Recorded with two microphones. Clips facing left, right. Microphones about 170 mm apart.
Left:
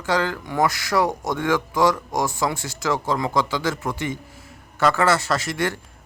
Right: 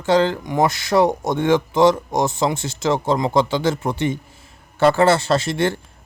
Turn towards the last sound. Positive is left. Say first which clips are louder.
# right 5 dB
turn(degrees=-25)  # may be behind; listen again after turning